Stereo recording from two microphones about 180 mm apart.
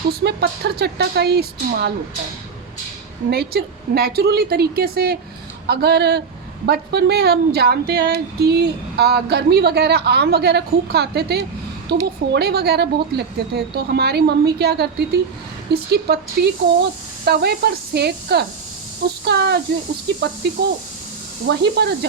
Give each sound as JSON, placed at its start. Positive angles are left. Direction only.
{"t": 0.1, "sound": "speech", "side_deg": -65}
{"t": 3.2, "sound": "speech", "side_deg": -60}
{"t": 21.4, "sound": "speech", "side_deg": -70}